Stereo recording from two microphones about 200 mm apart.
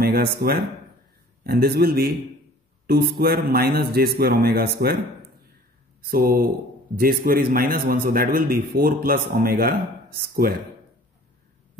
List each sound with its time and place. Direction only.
0.0 s a man's voice: 50° right (ahead or behind)
6.0 s a man's voice: 45° right (ahead or behind)